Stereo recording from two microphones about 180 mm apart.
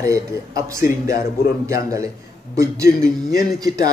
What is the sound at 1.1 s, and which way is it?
Speech, 55° left (ahead or behind).